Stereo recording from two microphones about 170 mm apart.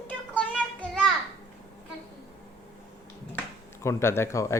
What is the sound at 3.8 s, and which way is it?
Speech, 15° left (ahead or behind).